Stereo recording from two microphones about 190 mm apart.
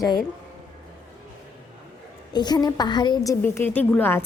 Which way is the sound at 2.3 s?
20° left (ahead or behind).